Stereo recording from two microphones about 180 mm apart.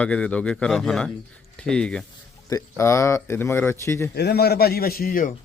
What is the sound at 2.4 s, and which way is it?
Speech, 15° left (ahead or behind).